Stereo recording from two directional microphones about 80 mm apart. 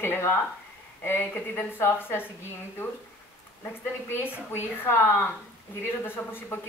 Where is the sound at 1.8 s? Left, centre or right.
Left.